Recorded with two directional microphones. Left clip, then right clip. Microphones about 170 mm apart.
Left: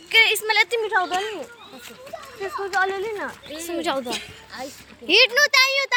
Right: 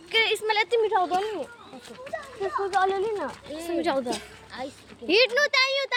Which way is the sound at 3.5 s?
Centre (ahead or behind).